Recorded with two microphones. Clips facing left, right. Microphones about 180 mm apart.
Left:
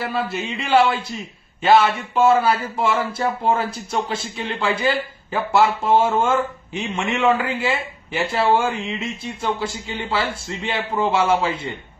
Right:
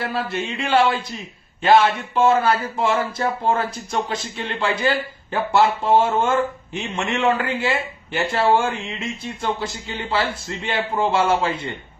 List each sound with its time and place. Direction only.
0.0 s speech: centre (ahead or behind)